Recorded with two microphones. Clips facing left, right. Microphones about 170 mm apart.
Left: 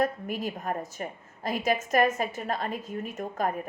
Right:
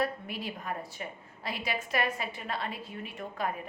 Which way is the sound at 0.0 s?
45° left (ahead or behind).